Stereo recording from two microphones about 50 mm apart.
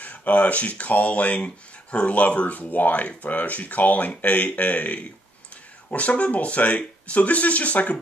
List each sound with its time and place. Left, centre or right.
0.0 s speech: left